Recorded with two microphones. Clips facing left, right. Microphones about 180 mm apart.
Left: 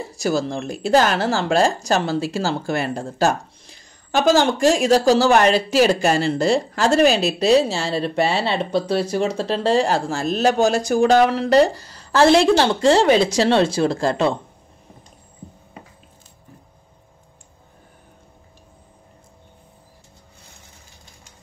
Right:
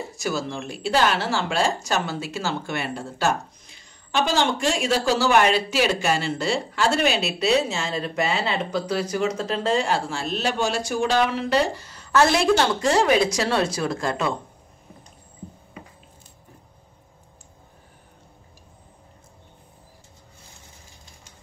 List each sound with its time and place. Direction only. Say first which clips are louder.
0.1 s speech: left 8 dB; 35° left (ahead or behind)